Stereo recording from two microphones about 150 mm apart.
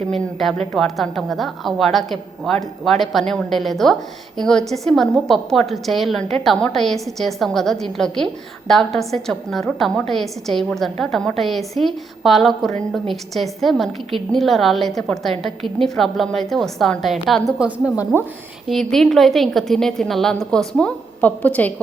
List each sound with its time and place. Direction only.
0.1 s a woman's voice: centre (ahead or behind)
18.1 s a woman's voice: 15° right (ahead or behind)
18.7 s a woman's voice: centre (ahead or behind)